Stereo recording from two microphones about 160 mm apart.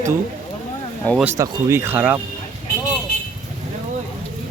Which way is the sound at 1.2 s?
20° right (ahead or behind).